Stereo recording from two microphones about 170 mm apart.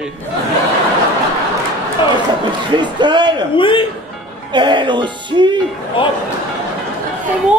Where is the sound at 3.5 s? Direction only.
30° left (ahead or behind).